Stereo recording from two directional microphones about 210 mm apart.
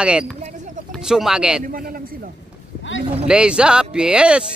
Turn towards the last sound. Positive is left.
turn(degrees=-5)  # may be behind; listen again after turning